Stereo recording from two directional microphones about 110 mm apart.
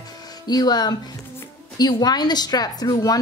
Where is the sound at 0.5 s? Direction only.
35° left (ahead or behind).